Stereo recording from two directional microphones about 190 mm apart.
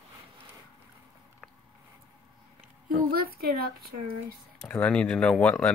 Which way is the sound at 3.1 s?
50° right (ahead or behind).